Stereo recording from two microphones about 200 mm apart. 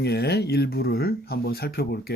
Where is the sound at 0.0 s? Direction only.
55° left (ahead or behind).